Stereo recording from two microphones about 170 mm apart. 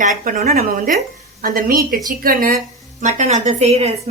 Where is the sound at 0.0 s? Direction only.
50° right (ahead or behind).